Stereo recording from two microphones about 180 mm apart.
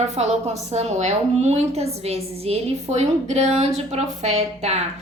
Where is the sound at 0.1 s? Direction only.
35° right (ahead or behind).